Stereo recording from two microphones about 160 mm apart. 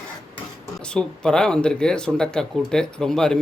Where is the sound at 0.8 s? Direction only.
5° left (ahead or behind).